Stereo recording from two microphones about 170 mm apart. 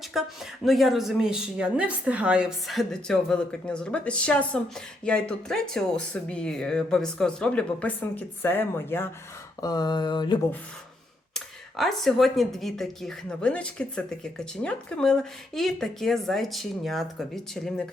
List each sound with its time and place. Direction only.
0.1 s speech: centre (ahead or behind)
9.6 s a sound: 20° left (ahead or behind)
11.3 s speech: centre (ahead or behind)